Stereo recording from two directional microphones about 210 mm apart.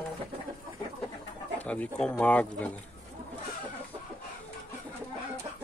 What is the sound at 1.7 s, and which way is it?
Speech, 5° left (ahead or behind).